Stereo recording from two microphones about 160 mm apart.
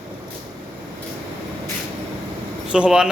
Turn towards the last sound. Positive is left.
turn(degrees=-5)  # may be behind; listen again after turning